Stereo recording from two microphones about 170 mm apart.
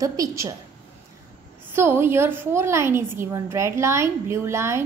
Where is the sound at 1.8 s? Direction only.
15° right (ahead or behind).